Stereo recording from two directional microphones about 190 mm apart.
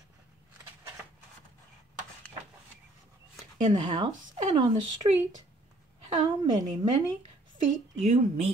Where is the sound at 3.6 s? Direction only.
25° right (ahead or behind).